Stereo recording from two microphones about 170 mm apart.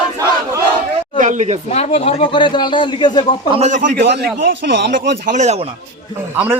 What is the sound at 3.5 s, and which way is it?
Speech, 40° right (ahead or behind).